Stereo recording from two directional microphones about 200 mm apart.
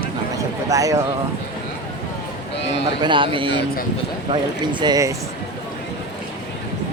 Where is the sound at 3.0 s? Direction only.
25° right (ahead or behind).